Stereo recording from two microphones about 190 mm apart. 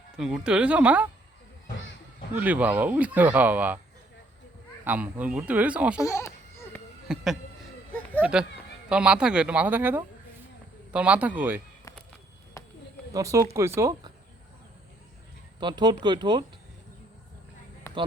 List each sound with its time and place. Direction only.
0.2 s a man's voice: 5° right (ahead or behind)
2.3 s speech: 10° right (ahead or behind)
4.9 s speech: 10° right (ahead or behind)
6.0 s a sound: 15° left (ahead or behind)
7.1 s a man's voice: 5° right (ahead or behind)
13.1 s speech: 15° right (ahead or behind)
15.6 s speech: 25° right (ahead or behind)
17.9 s a sound: 15° left (ahead or behind)